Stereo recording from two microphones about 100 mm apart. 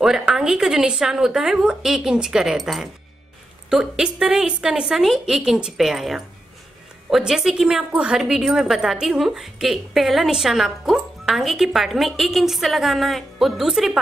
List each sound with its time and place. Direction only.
0.0 s a woman's voice: 5° right (ahead or behind)